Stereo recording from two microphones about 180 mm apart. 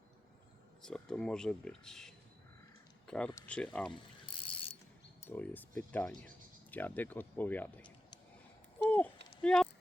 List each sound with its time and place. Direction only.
0.8 s speech: 5° left (ahead or behind)
4.3 s pulleys: 30° left (ahead or behind)
5.2 s speech: 10° left (ahead or behind)
9.4 s speech: 5° left (ahead or behind)